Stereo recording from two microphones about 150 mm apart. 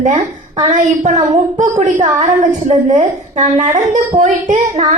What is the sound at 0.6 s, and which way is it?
A woman's voice, 55° right (ahead or behind).